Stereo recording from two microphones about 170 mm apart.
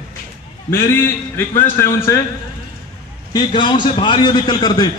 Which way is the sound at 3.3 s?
30° left (ahead or behind).